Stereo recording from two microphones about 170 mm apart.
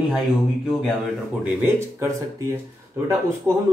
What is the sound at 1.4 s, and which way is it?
A man's voice, 10° right (ahead or behind).